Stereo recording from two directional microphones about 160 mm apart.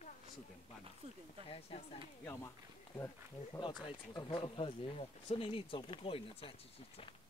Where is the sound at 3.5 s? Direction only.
30° left (ahead or behind).